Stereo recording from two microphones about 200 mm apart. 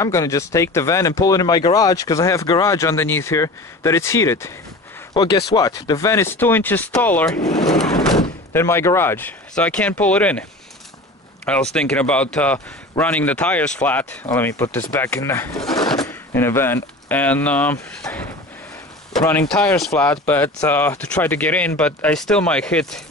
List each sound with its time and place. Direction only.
0.0 s speech: 15° left (ahead or behind)
11.4 s speech: 5° left (ahead or behind)
15.6 s a sound: centre (ahead or behind)
16.0 s speech: 10° left (ahead or behind)
19.2 s speech: 5° left (ahead or behind)